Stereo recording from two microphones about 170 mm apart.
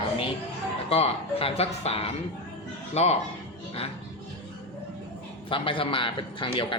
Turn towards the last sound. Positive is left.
turn(degrees=30)  # may be behind; listen again after turning